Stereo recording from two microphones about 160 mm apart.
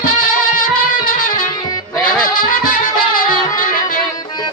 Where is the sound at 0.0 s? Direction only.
55° left (ahead or behind).